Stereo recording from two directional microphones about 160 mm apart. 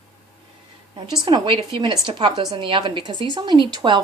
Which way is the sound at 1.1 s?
30° right (ahead or behind).